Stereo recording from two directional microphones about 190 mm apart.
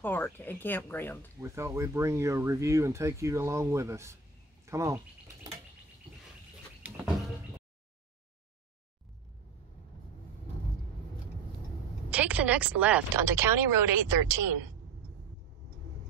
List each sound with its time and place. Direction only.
0.0 s speech: 10° left (ahead or behind)
1.4 s speech: 15° right (ahead or behind)
4.6 s bird: 15° right (ahead or behind)
12.1 s speech: 10° right (ahead or behind)